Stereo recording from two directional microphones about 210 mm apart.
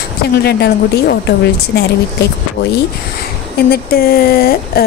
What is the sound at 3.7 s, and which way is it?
Speech, 45° left (ahead or behind).